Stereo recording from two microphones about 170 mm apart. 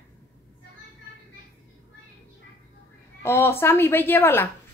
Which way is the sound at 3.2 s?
15° left (ahead or behind).